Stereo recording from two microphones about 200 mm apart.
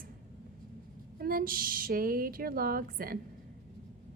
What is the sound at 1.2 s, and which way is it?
Speech, 45° right (ahead or behind).